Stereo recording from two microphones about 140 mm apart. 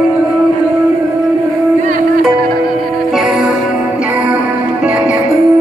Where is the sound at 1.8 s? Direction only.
75° right (ahead or behind).